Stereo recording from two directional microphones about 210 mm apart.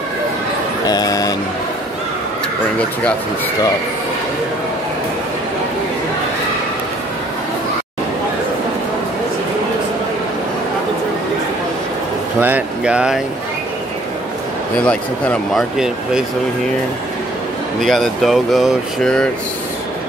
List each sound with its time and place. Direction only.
0.8 s vehicle: 20° left (ahead or behind)
12.4 s speech: 10° right (ahead or behind)
14.9 s speech: 5° left (ahead or behind)
17.7 s speech: centre (ahead or behind)